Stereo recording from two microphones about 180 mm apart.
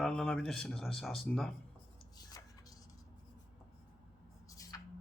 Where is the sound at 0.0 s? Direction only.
5° left (ahead or behind).